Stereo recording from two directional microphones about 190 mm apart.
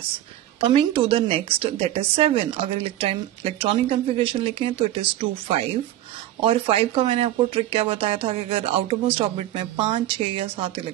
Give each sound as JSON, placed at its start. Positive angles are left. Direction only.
{"t": 0.7, "sound": "a woman's voice", "side_deg": -30}